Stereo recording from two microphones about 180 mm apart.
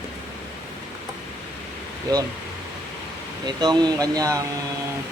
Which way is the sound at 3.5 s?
25° right (ahead or behind).